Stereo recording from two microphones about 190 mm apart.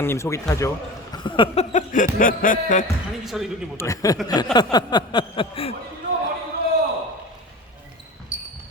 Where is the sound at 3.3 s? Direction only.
Centre (ahead or behind).